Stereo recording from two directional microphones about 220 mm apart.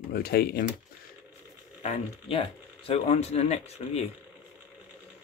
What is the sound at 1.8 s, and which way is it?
Speech, 30° left (ahead or behind).